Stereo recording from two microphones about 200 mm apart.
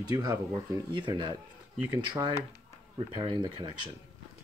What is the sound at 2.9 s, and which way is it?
Speech, 30° right (ahead or behind).